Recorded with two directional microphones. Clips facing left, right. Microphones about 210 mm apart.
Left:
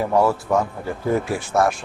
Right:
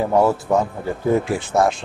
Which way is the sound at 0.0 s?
20° right (ahead or behind).